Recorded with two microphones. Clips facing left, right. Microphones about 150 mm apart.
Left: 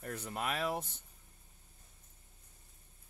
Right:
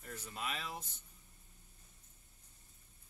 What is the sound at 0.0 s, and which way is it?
Speech, 60° left (ahead or behind).